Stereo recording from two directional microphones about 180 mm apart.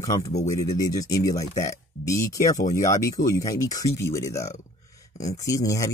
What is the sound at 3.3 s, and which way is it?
Speech, 20° left (ahead or behind).